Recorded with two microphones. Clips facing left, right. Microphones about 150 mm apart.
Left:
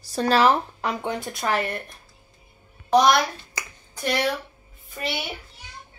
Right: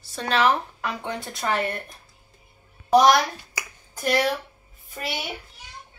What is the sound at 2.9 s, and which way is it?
Finger snapping, 10° right (ahead or behind).